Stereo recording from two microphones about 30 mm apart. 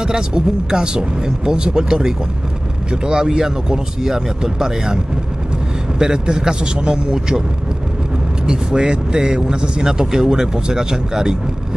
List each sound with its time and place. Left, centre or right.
0.0 s speech: right
8.5 s speech: right